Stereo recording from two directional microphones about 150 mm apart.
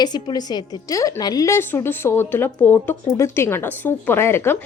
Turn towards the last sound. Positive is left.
turn(degrees=15)  # may be behind; listen again after turning